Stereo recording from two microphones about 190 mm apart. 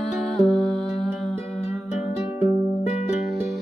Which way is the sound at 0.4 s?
5° left (ahead or behind).